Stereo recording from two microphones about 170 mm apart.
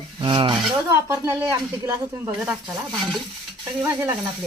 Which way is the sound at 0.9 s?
15° right (ahead or behind).